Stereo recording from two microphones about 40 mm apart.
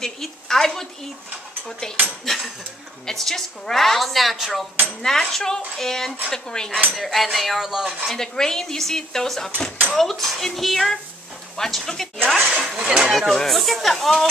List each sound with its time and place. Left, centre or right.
0.0 s speech: centre
2.2 s a woman's voice: centre
4.8 s speech: centre
7.0 s a woman's voice: centre
8.2 s a woman's voice: centre
12.5 s speech: centre
13.1 s a woman's voice: centre